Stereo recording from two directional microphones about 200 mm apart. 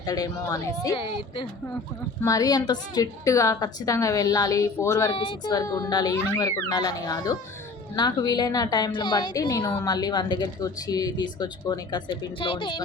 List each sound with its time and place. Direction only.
0.0 s a woman's voice: 20° left (ahead or behind)